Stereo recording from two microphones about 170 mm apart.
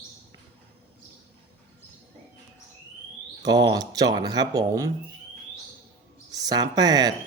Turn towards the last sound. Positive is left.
turn(degrees=-25)  # may be behind; listen again after turning